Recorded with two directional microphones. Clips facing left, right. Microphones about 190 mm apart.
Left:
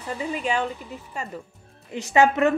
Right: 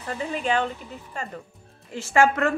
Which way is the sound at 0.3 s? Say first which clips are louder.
Right 1 dB; 5° left (ahead or behind).